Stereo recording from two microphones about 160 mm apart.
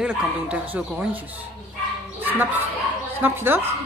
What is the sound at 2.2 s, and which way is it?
Speech, 10° right (ahead or behind).